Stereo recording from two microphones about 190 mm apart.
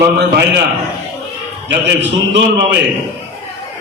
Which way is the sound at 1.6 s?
70° right (ahead or behind).